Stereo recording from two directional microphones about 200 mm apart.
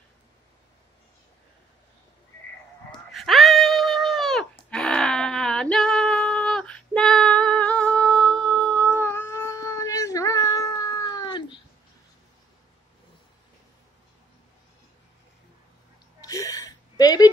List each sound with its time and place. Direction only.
2.9 s goat: centre (ahead or behind)
8.8 s cat: 10° left (ahead or behind)
16.2 s a sound: 20° left (ahead or behind)